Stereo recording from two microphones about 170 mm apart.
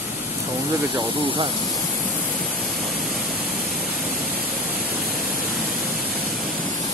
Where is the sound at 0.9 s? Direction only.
30° right (ahead or behind).